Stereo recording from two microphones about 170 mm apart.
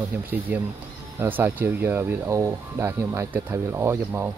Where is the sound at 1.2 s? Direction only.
10° right (ahead or behind).